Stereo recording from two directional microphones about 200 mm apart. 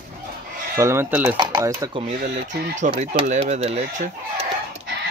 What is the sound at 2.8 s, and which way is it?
Speech, 35° right (ahead or behind).